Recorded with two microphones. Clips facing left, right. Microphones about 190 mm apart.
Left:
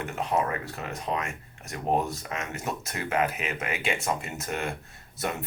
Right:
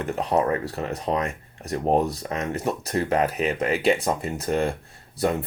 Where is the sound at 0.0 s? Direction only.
35° right (ahead or behind).